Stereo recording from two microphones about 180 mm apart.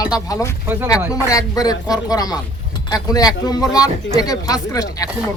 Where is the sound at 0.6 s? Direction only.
10° right (ahead or behind).